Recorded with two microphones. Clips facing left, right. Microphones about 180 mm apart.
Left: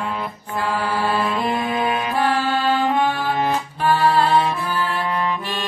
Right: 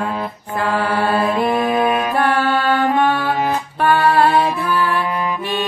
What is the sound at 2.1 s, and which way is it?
Music, 60° right (ahead or behind).